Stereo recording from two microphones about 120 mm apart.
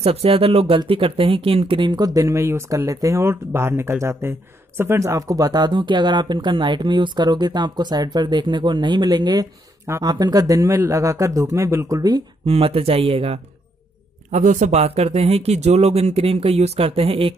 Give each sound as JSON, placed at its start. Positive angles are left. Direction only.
{"t": 0.0, "sound": "speech", "side_deg": -55}
{"t": 12.4, "sound": "speech", "side_deg": -55}
{"t": 14.3, "sound": "speech", "side_deg": -90}